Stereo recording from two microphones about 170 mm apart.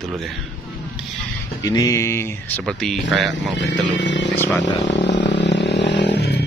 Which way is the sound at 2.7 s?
5° left (ahead or behind).